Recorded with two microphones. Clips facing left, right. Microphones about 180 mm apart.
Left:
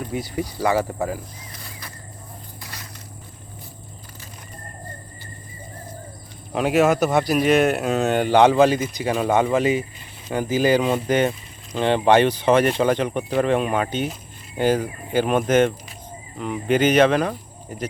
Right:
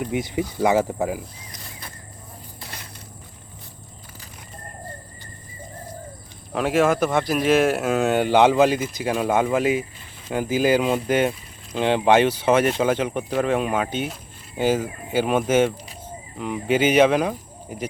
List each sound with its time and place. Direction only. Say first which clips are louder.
0.0 s speech: right 2 dB; 20° right (ahead or behind)
6.5 s speech: left 2 dB; centre (ahead or behind)